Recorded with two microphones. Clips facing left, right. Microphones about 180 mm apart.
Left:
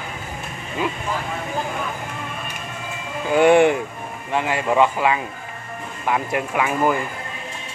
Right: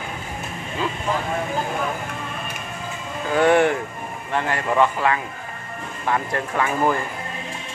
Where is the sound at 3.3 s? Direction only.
15° left (ahead or behind).